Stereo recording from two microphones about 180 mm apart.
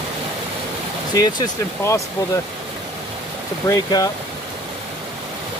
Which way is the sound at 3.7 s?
20° left (ahead or behind).